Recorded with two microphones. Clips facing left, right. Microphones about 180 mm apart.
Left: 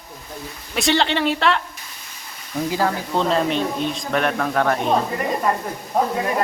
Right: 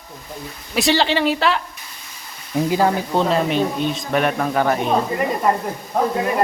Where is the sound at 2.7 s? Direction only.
20° right (ahead or behind).